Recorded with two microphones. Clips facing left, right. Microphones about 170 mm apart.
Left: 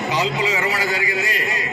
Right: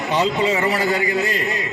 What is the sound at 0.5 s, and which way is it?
Speech, 30° right (ahead or behind).